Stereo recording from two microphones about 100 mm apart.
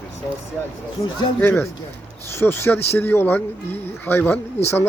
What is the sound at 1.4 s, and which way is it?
Speech, 20° left (ahead or behind).